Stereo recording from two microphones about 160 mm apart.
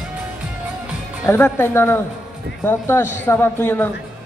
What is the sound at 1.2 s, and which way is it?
Speech, 15° left (ahead or behind).